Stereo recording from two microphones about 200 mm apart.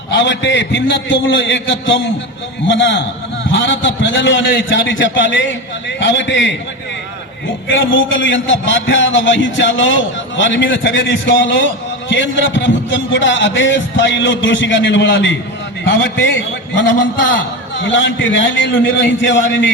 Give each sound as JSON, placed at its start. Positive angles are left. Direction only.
{"t": 0.1, "sound": "a man's voice", "side_deg": 65}